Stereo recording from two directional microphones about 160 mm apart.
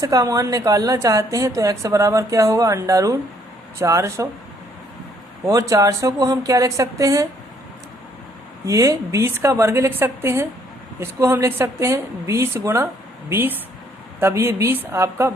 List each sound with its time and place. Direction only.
0.0 s a woman's voice: 20° right (ahead or behind)
5.5 s a woman's voice: 20° right (ahead or behind)
8.6 s speech: 20° right (ahead or behind)